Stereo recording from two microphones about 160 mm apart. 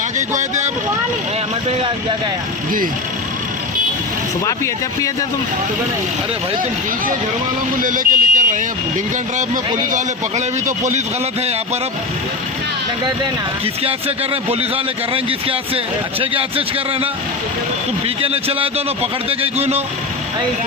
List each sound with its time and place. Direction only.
0.2 s a man's voice: 50° right (ahead or behind)
4.4 s speech: 20° left (ahead or behind)
7.8 s speech: 55° right (ahead or behind)
9.9 s a man's voice: 50° right (ahead or behind)
15.1 s a man's voice: 35° right (ahead or behind)
18.2 s a man's voice: 35° right (ahead or behind)